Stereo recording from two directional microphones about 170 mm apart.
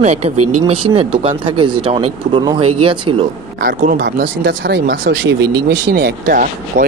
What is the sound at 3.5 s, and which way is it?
Speech, 55° right (ahead or behind).